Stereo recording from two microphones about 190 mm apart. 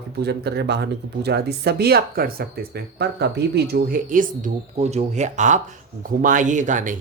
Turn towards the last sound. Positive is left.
turn(degrees=-40)  # may be behind; listen again after turning